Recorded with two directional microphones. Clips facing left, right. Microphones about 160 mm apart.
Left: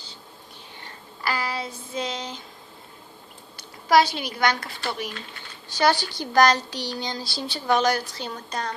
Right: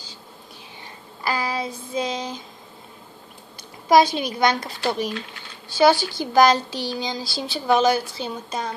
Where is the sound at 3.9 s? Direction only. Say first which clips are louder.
Right 3 dB; 15° right (ahead or behind).